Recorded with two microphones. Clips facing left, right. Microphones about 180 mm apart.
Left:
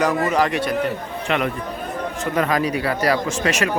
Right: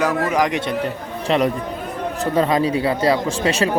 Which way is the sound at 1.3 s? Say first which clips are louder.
Right 4 dB; 35° right (ahead or behind).